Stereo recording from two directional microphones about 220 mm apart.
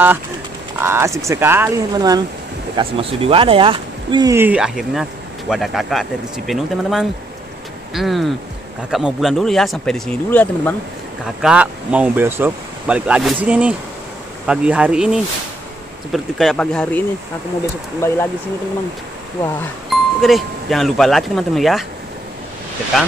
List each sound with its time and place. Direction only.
0.7 s speech: 10° right (ahead or behind); by 10.7 s 10° left (ahead or behind)
11.4 s speech: 5° right (ahead or behind)
18.0 s speech: 10° left (ahead or behind)
20.2 s speech: centre (ahead or behind)